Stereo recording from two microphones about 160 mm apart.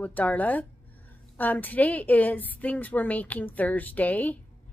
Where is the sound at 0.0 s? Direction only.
10° left (ahead or behind).